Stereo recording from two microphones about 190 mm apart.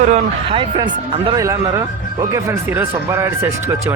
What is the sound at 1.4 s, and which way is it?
Speech, 15° right (ahead or behind).